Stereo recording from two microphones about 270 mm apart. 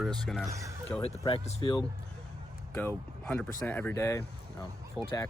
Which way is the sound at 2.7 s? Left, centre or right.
Centre.